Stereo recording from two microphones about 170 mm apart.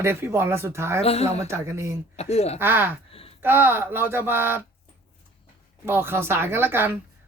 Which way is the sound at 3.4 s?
10° right (ahead or behind).